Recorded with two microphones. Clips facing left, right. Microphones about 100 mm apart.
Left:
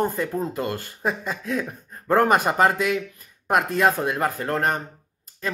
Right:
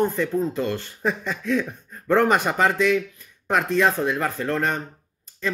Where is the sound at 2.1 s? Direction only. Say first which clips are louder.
Even; 45° left (ahead or behind).